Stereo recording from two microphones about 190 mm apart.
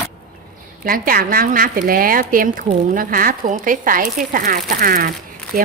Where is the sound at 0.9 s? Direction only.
50° right (ahead or behind).